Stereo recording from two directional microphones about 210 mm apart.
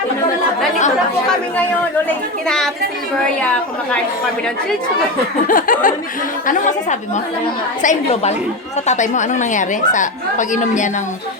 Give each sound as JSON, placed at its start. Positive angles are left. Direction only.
{"t": 5.5, "sound": "a woman's voice", "side_deg": 40}
{"t": 7.8, "sound": "a woman's voice", "side_deg": 35}